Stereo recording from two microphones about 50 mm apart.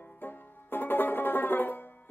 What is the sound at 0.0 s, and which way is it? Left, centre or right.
Music, left.